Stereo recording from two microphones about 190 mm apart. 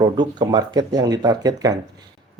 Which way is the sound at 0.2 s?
20° right (ahead or behind).